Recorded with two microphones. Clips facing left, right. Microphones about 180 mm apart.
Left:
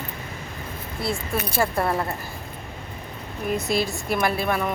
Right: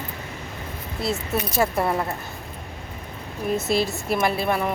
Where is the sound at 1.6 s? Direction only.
Centre (ahead or behind).